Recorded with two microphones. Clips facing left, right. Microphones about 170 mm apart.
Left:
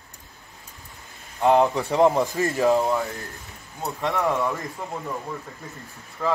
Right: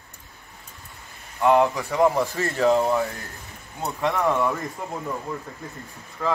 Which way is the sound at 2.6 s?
Centre (ahead or behind).